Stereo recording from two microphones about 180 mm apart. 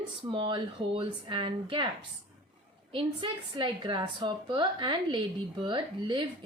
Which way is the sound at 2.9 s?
25° right (ahead or behind).